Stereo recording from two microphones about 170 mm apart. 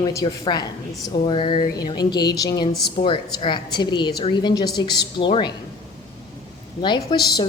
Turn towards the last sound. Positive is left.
turn(degrees=25)  # may be behind; listen again after turning